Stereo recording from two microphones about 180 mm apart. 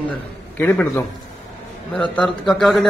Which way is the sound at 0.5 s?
10° left (ahead or behind).